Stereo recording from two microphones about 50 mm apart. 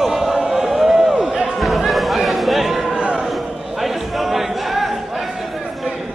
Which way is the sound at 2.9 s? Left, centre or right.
Centre.